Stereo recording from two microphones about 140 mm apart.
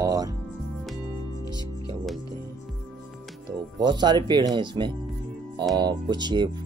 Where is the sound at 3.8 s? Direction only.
30° right (ahead or behind).